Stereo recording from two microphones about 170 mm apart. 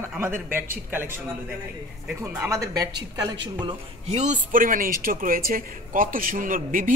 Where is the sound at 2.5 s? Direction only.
20° right (ahead or behind).